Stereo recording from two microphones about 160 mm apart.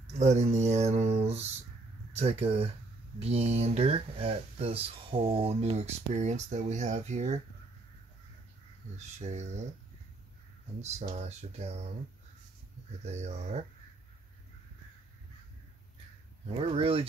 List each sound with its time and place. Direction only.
0.1 s speech: 45° right (ahead or behind)
8.9 s speech: 45° right (ahead or behind)
10.8 s speech: 45° right (ahead or behind)
13.0 s speech: 45° right (ahead or behind)
16.5 s speech: 35° right (ahead or behind)